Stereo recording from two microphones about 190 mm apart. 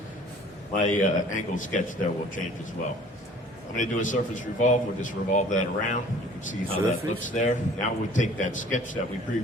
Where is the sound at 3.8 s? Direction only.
40° left (ahead or behind).